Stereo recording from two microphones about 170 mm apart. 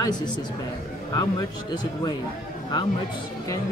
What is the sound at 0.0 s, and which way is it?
Speech, 25° left (ahead or behind).